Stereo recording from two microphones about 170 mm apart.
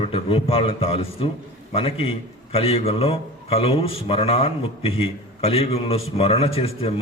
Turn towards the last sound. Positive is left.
turn(degrees=35)  # may be behind; listen again after turning